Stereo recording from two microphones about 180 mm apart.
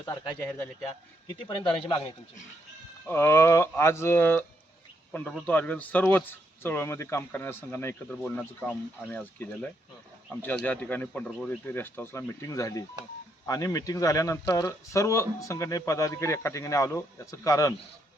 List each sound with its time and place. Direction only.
0.0 s speech: 15° left (ahead or behind)
1.3 s speech: 25° left (ahead or behind)
3.1 s speech: 15° left (ahead or behind)